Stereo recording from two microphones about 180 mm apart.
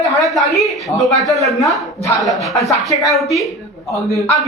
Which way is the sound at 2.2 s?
Centre (ahead or behind).